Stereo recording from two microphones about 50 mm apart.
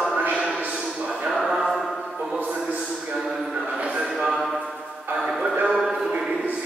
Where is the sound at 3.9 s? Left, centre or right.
Centre.